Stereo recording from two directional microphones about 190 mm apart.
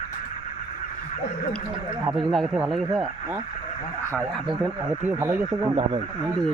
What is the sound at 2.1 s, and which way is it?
Speech, centre (ahead or behind).